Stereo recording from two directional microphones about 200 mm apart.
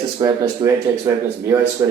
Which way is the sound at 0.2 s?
15° right (ahead or behind).